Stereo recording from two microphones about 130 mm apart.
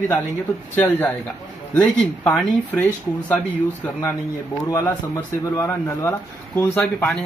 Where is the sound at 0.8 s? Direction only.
15° left (ahead or behind).